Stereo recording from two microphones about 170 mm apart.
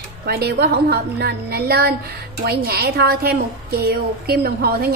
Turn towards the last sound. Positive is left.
turn(degrees=-65)  # may be behind; listen again after turning